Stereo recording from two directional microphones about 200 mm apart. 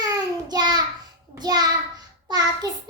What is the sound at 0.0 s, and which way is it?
Child singing, 20° right (ahead or behind).